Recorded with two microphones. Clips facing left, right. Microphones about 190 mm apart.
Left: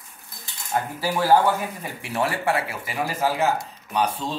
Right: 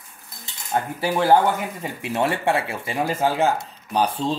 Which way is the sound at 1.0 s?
25° right (ahead or behind).